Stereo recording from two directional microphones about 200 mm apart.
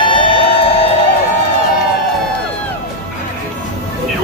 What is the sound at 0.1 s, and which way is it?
Music, 25° left (ahead or behind).